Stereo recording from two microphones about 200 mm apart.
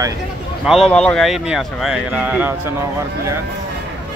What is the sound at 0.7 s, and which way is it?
Speech, centre (ahead or behind).